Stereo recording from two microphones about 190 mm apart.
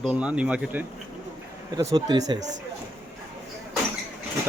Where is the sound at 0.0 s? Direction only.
5° right (ahead or behind).